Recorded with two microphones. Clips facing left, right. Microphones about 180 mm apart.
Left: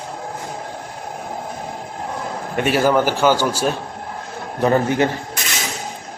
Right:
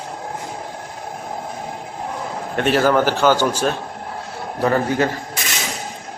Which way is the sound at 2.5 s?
10° left (ahead or behind).